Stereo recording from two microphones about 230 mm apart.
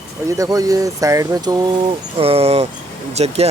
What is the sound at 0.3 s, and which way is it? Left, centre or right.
Speech, centre.